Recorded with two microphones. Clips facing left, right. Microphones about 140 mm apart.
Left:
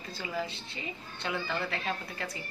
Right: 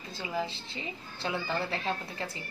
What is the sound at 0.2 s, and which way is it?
A woman's voice, 25° right (ahead or behind).